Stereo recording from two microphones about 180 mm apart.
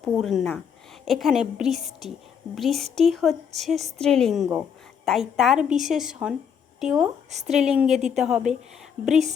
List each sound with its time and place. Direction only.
0.0 s a woman's voice: centre (ahead or behind)
1.8 s speech: 35° right (ahead or behind)
2.6 s a woman's voice: centre (ahead or behind)